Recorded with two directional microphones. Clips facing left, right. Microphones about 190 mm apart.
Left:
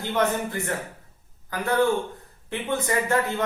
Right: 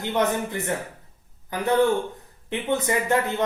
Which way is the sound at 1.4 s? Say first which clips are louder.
Right 2 dB; 20° right (ahead or behind).